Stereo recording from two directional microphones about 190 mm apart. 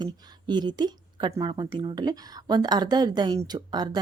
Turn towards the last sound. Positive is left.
turn(degrees=-20)  # may be behind; listen again after turning